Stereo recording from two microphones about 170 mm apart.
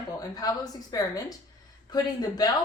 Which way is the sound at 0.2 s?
20° left (ahead or behind).